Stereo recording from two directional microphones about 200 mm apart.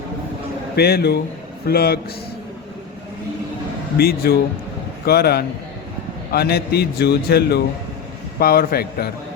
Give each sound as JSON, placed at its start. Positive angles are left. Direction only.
{"t": 0.8, "sound": "a man's voice", "side_deg": 50}
{"t": 3.9, "sound": "a man's voice", "side_deg": 50}